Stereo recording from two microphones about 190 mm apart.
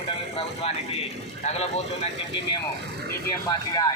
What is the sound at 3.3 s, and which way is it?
Speech, 20° left (ahead or behind).